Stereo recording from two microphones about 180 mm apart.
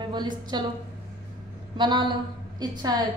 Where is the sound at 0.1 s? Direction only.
25° right (ahead or behind).